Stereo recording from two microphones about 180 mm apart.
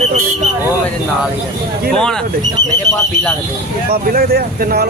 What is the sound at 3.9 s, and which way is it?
Speech, 55° right (ahead or behind).